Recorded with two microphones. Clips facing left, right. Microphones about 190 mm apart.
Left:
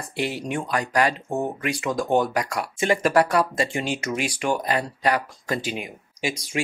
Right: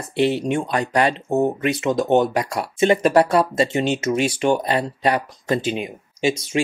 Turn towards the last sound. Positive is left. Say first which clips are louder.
# right 7 dB
turn(degrees=-25)  # may be behind; listen again after turning